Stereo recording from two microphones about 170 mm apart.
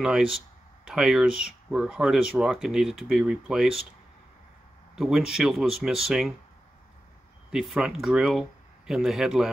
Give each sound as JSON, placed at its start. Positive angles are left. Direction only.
{"t": 0.0, "sound": "speech", "side_deg": -5}
{"t": 4.9, "sound": "speech", "side_deg": -5}
{"t": 7.5, "sound": "speech", "side_deg": 0}